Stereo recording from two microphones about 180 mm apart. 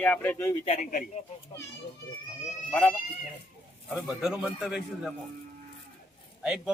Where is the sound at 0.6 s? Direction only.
40° left (ahead or behind).